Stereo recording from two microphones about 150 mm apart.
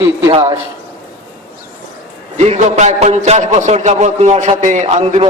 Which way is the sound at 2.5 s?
50° right (ahead or behind).